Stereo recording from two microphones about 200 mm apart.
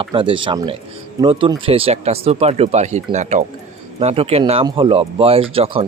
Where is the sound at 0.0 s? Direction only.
25° right (ahead or behind).